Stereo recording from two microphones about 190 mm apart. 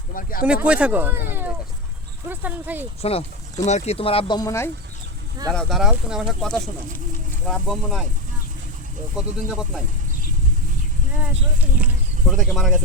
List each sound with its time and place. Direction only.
0.1 s speech: 45° left (ahead or behind)
0.4 s speech: 5° right (ahead or behind)
3.0 s speech: 30° left (ahead or behind); by 4.7 s 15° left (ahead or behind)
5.5 s speech: centre (ahead or behind)
9.1 s speech: 5° right (ahead or behind)
11.2 s speech: 5° right (ahead or behind)